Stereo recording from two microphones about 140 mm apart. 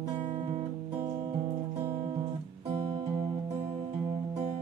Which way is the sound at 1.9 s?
40° right (ahead or behind).